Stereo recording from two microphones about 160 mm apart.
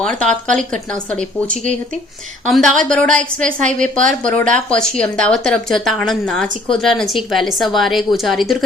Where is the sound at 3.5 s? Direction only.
55° right (ahead or behind).